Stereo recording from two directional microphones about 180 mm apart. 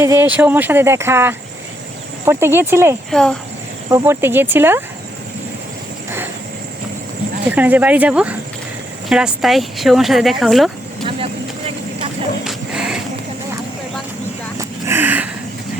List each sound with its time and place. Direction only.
0.0 s speech: 15° right (ahead or behind)
3.1 s speech: 5° left (ahead or behind)
3.8 s speech: 15° right (ahead or behind)
7.5 s speech: 10° right (ahead or behind)
11.0 s vehicle: 30° right (ahead or behind)
12.5 s a sound: 5° right (ahead or behind)
14.6 s vehicle: 15° right (ahead or behind)